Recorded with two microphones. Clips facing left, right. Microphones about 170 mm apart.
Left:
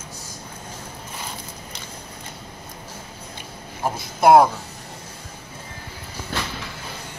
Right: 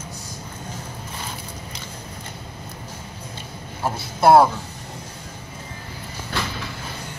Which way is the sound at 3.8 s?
15° left (ahead or behind).